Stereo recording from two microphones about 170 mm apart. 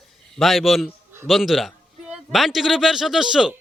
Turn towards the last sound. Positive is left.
turn(degrees=-5)  # may be behind; listen again after turning